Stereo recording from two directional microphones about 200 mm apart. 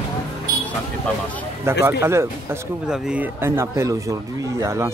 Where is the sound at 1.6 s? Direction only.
15° right (ahead or behind).